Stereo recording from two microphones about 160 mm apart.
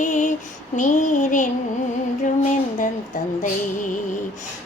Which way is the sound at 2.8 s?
50° left (ahead or behind).